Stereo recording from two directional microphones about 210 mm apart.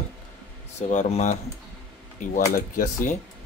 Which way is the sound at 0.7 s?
35° left (ahead or behind).